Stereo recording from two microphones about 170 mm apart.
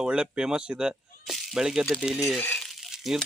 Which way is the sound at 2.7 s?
Centre (ahead or behind).